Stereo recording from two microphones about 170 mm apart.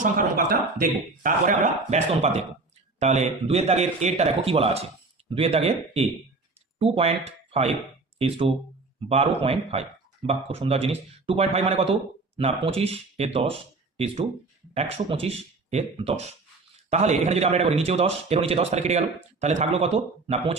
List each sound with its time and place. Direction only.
0.0 s speech: 50° right (ahead or behind); by 20.5 s 30° right (ahead or behind)